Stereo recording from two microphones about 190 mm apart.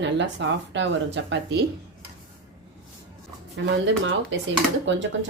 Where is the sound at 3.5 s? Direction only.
75° right (ahead or behind).